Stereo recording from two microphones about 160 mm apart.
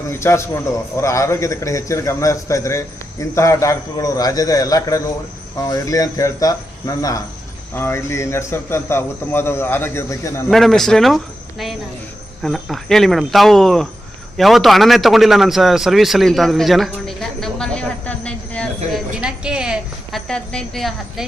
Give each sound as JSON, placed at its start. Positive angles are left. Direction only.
{"t": 0.1, "sound": "a man's voice", "side_deg": 15}
{"t": 10.5, "sound": "speech", "side_deg": 0}
{"t": 12.4, "sound": "a man's voice", "side_deg": 0}
{"t": 18.9, "sound": "a sound", "side_deg": -5}